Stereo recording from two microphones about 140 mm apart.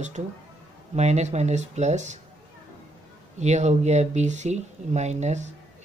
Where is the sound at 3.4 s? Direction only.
55° right (ahead or behind).